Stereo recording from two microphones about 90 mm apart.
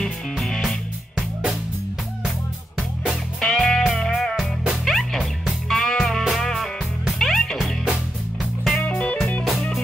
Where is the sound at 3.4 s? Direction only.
5° left (ahead or behind).